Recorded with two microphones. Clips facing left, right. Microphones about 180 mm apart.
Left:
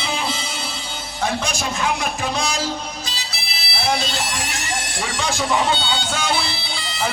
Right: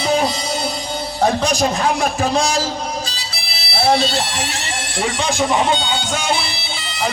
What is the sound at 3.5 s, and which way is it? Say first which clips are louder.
Speech: right 7 dB; 35° right (ahead or behind).